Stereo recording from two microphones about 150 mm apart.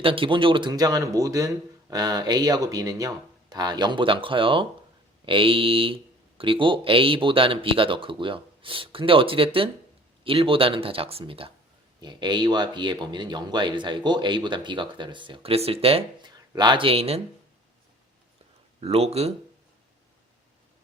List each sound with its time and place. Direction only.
0.0 s speech: 35° right (ahead or behind)
16.5 s speech: 30° right (ahead or behind)
18.8 s speech: 40° right (ahead or behind)